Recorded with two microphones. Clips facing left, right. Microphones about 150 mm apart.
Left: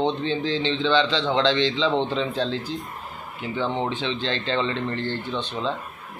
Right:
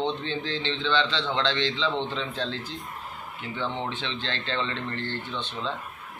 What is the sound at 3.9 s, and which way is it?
Speech, 10° left (ahead or behind).